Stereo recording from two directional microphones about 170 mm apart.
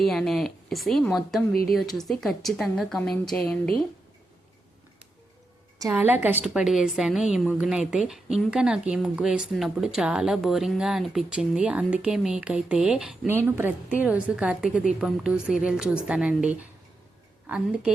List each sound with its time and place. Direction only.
0.0 s a woman's voice: centre (ahead or behind)
5.9 s a woman's voice: 10° right (ahead or behind)